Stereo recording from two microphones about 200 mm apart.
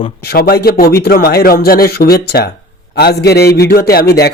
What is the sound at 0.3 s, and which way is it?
A man's voice, 50° left (ahead or behind).